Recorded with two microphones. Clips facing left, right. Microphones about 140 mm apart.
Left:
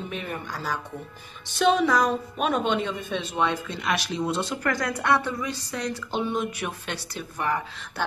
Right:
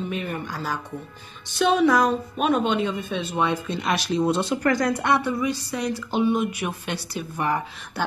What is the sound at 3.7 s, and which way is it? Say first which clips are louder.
A woman's voice: right 4 dB; 25° right (ahead or behind).